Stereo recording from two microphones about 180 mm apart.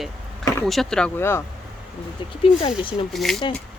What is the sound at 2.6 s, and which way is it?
Speech, 30° left (ahead or behind).